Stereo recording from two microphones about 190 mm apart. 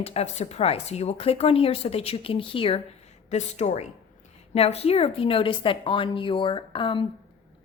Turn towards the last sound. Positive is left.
turn(degrees=25)  # may be behind; listen again after turning